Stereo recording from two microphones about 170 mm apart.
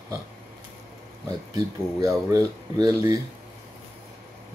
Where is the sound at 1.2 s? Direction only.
20° right (ahead or behind).